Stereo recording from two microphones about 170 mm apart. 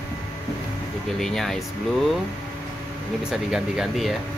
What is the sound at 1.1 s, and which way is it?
Speech, centre (ahead or behind).